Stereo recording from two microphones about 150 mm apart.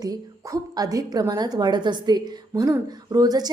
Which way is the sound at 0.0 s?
25° right (ahead or behind).